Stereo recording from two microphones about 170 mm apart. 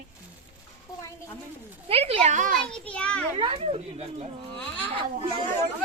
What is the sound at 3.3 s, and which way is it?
A child's voice, 35° right (ahead or behind).